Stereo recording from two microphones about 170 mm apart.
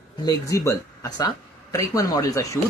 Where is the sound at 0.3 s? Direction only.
20° left (ahead or behind).